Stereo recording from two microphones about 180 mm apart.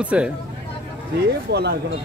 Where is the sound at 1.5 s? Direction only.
65° right (ahead or behind).